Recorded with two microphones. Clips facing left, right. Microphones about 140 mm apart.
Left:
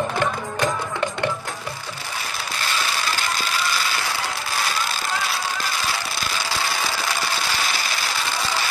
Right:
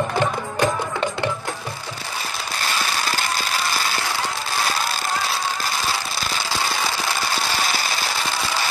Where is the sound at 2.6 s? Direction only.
45° right (ahead or behind).